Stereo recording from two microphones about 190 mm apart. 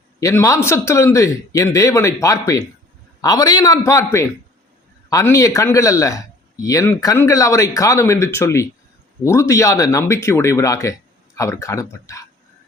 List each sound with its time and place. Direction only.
0.2 s a man's voice: 15° left (ahead or behind)